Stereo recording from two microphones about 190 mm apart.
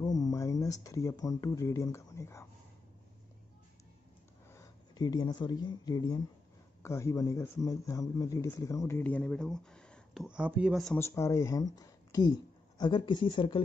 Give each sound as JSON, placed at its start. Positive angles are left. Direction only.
{"t": 0.0, "sound": "speech", "side_deg": 20}
{"t": 4.5, "sound": "a man's voice", "side_deg": 15}
{"t": 11.0, "sound": "speech", "side_deg": 15}